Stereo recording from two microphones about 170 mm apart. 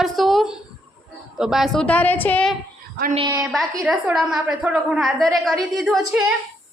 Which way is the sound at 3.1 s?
25° right (ahead or behind).